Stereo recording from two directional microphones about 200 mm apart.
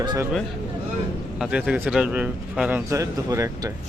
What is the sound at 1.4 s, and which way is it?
A man's voice, 5° right (ahead or behind).